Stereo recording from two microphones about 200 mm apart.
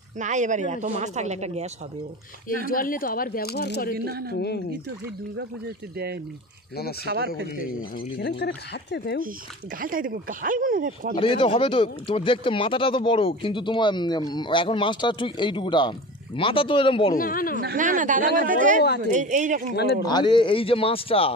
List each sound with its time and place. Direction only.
0.2 s speech: 40° right (ahead or behind)
2.7 s speech: 45° left (ahead or behind)
3.9 s speech: 50° right (ahead or behind)
7.1 s speech: 55° right (ahead or behind)
8.2 s speech: 55° left (ahead or behind)
9.8 s speech: 45° right (ahead or behind)
11.1 s speech: 25° left (ahead or behind)
17.1 s speech: 45° left (ahead or behind)
17.7 s speech: 40° right (ahead or behind)
19.7 s speech: 55° left (ahead or behind)
20.1 s speech: 25° left (ahead or behind)